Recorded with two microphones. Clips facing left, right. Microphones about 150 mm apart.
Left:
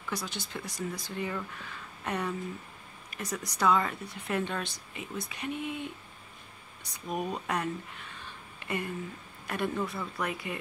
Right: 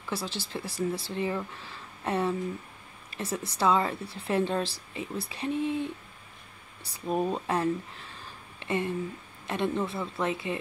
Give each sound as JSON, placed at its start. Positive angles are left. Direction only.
{"t": 0.1, "sound": "a woman's voice", "side_deg": -30}